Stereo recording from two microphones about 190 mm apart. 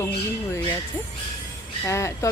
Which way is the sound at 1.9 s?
15° left (ahead or behind).